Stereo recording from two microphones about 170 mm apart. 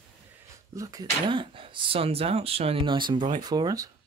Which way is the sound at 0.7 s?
20° right (ahead or behind).